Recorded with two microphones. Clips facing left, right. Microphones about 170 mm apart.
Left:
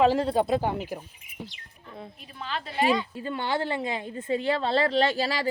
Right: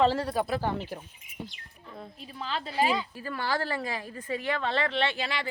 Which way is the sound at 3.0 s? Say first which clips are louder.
Left 3 dB; 25° left (ahead or behind).